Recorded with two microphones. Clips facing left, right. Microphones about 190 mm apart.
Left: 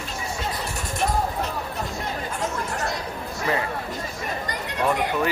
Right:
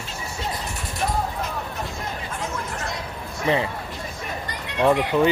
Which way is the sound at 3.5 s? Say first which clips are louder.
Right 4 dB; 25° right (ahead or behind).